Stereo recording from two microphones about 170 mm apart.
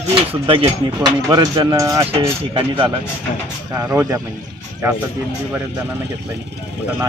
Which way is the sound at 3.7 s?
15° right (ahead or behind).